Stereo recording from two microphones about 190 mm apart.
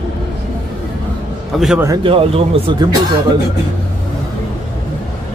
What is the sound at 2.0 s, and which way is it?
Speech, 30° right (ahead or behind).